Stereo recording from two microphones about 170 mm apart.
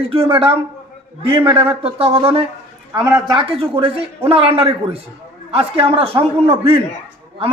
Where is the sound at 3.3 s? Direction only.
30° right (ahead or behind).